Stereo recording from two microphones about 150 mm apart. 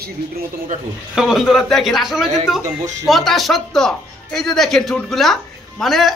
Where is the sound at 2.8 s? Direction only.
50° right (ahead or behind).